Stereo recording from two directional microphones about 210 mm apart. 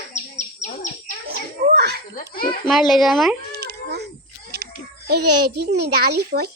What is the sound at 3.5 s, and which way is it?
Cat, 50° right (ahead or behind).